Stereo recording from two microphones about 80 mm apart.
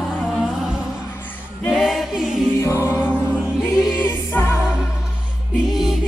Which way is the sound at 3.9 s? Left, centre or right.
Left.